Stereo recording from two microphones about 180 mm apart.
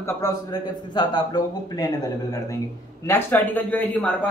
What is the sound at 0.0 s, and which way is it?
A man's voice, 20° left (ahead or behind).